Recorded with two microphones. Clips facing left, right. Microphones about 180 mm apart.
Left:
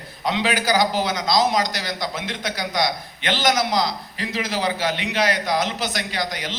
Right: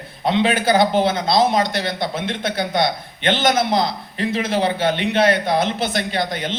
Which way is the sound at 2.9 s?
55° right (ahead or behind).